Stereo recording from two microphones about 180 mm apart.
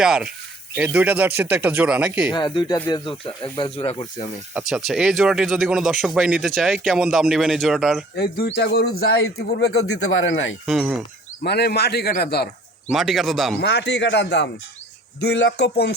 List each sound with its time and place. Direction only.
0.0 s speech: 5° right (ahead or behind)
2.3 s speech: 25° left (ahead or behind)
4.5 s speech: 5° right (ahead or behind)
8.1 s speech: 60° left (ahead or behind); by 10.6 s 90° left
10.7 s speech: 5° right (ahead or behind)
11.4 s a man's voice: 65° left (ahead or behind)
12.9 s speech: centre (ahead or behind)
13.6 s speech: 70° left (ahead or behind)